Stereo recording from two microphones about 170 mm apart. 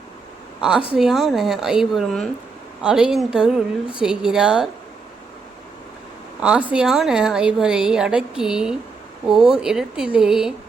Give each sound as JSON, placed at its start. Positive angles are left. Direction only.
{"t": 0.6, "sound": "a woman's voice", "side_deg": -5}
{"t": 6.4, "sound": "a woman's voice", "side_deg": -10}